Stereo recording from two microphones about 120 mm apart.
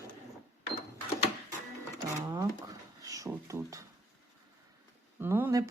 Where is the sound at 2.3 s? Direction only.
25° right (ahead or behind).